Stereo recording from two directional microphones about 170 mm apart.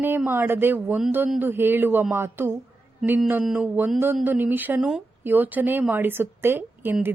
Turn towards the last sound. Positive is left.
turn(degrees=-10)  # may be behind; listen again after turning